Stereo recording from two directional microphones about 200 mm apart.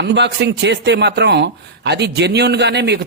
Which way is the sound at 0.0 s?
60° right (ahead or behind).